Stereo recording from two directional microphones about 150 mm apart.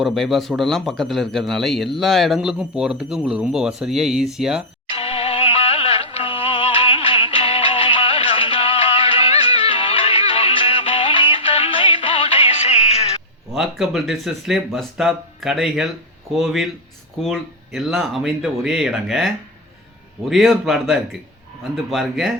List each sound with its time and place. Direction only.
0.0 s a man's voice: centre (ahead or behind)
4.9 s music: 40° left (ahead or behind)
13.5 s a man's voice: centre (ahead or behind)